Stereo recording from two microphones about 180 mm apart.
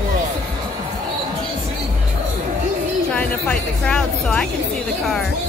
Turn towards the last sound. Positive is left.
turn(degrees=5)  # may be behind; listen again after turning